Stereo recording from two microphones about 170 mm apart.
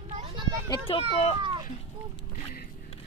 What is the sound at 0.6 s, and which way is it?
Speech, 30° left (ahead or behind).